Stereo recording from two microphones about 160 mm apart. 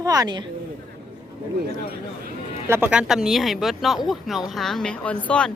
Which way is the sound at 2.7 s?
10° right (ahead or behind).